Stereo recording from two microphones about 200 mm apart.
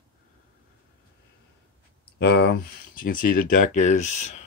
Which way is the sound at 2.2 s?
55° left (ahead or behind).